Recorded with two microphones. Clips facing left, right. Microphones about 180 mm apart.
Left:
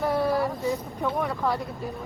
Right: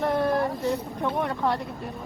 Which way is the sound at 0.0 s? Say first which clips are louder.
Even; 5° left (ahead or behind).